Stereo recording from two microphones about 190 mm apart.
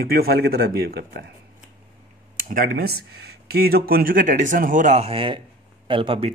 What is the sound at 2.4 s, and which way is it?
Speech, 45° right (ahead or behind).